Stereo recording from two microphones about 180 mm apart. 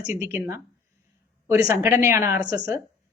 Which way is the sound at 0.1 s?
15° right (ahead or behind).